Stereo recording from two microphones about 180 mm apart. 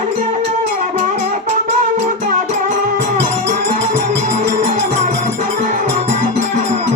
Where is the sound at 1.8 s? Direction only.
45° right (ahead or behind).